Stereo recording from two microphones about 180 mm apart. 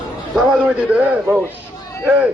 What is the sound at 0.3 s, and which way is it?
A man's voice, 5° right (ahead or behind).